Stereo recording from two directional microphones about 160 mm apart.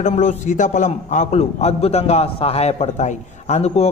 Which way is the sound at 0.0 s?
45° left (ahead or behind).